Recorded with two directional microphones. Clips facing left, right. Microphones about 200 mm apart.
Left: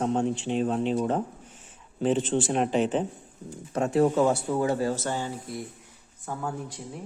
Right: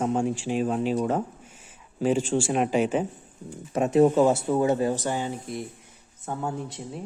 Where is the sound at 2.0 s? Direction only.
10° right (ahead or behind).